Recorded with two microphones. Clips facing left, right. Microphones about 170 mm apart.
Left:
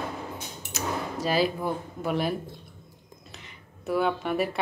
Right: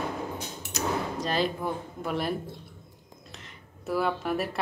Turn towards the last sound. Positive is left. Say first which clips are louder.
# left 2 dB
turn(degrees=0)  # may be behind; listen again after turning